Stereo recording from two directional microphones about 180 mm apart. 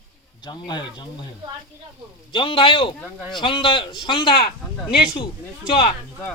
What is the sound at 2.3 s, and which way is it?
Speech, 30° left (ahead or behind).